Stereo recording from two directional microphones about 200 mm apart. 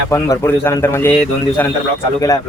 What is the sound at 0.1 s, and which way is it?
A man's voice, 15° left (ahead or behind).